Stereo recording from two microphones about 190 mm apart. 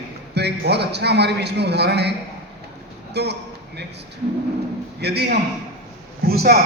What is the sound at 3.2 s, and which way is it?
Speech, 60° right (ahead or behind).